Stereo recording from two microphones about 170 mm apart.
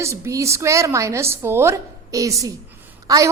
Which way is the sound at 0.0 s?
20° right (ahead or behind).